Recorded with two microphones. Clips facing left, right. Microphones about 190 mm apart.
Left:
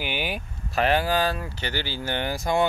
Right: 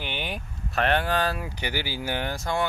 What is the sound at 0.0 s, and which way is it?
Speech, 5° left (ahead or behind).